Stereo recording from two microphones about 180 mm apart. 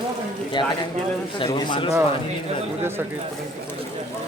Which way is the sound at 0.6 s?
25° left (ahead or behind).